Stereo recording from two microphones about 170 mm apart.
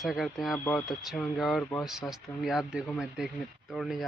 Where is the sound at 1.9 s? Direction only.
Centre (ahead or behind).